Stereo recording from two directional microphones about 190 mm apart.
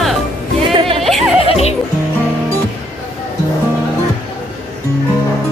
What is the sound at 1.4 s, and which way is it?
Music, 30° left (ahead or behind).